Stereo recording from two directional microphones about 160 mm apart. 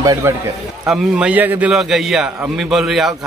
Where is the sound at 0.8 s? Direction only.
5° right (ahead or behind).